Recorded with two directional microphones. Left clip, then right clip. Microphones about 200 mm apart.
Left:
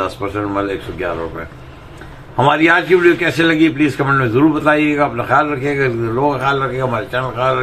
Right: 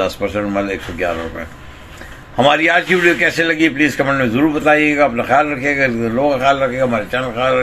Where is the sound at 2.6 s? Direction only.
55° right (ahead or behind).